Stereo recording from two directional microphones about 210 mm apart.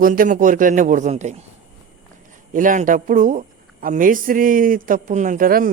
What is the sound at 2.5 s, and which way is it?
A man's voice, 40° right (ahead or behind).